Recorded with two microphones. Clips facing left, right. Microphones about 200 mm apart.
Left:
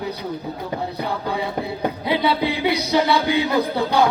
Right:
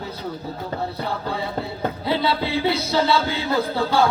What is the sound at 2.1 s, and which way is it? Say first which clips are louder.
Music: left 2 dB; 15° left (ahead or behind).